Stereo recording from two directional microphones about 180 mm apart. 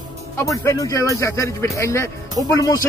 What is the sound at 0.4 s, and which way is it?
Speech, 15° left (ahead or behind).